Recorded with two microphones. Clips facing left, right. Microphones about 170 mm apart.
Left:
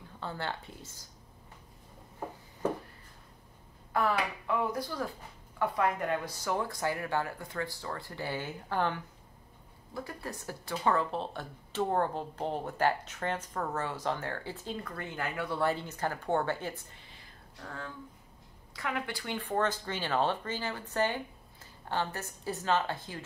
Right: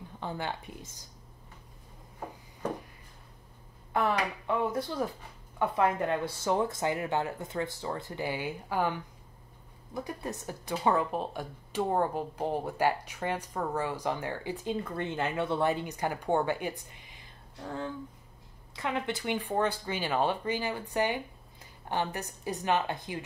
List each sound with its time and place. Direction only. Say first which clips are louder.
0.2 s speech: right 2 dB; 15° right (ahead or behind)
3.9 s speech: right 1 dB; 25° right (ahead or behind)
9.9 s speech: right 3 dB; 20° right (ahead or behind)